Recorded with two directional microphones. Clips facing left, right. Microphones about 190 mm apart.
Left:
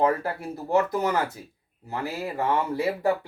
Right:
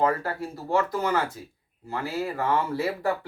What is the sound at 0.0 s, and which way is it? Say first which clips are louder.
Speech: left 1 dB; 20° left (ahead or behind).